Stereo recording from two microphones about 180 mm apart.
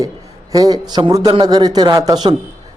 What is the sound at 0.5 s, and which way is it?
A man's voice, 20° right (ahead or behind).